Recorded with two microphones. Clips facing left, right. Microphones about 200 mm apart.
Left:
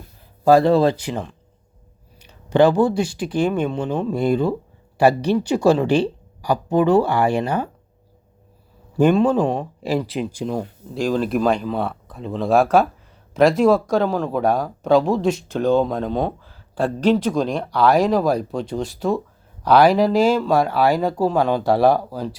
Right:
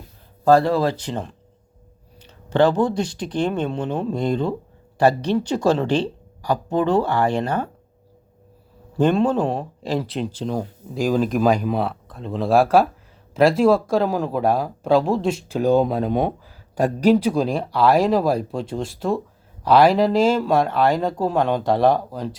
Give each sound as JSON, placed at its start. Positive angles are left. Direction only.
{"t": 0.4, "sound": "speech", "side_deg": 15}
{"t": 0.7, "sound": "speech", "side_deg": 25}
{"t": 0.9, "sound": "speech", "side_deg": 10}
{"t": 3.8, "sound": "speech", "side_deg": 0}
{"t": 4.1, "sound": "speech", "side_deg": 10}
{"t": 9.1, "sound": "speech", "side_deg": 10}
{"t": 9.4, "sound": "speech", "side_deg": 0}